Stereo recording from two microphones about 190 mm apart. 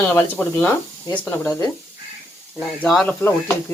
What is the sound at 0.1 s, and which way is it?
Speech, 10° left (ahead or behind).